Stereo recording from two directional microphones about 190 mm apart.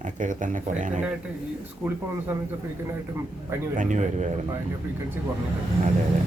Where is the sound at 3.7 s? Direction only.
40° right (ahead or behind).